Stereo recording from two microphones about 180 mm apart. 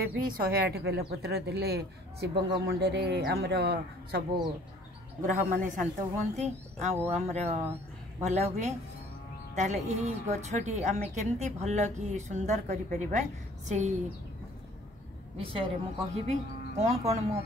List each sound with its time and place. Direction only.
0.0 s a woman's voice: 55° right (ahead or behind)
5.2 s a woman's voice: 45° right (ahead or behind)
15.3 s a woman's voice: 30° right (ahead or behind)